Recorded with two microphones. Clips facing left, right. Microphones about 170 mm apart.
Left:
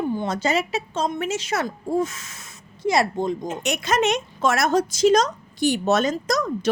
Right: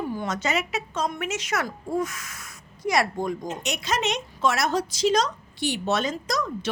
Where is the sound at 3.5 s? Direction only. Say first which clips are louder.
Left 4 dB; 50° left (ahead or behind).